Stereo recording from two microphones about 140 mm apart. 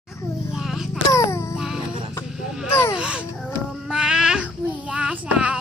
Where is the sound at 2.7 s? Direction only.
15° left (ahead or behind).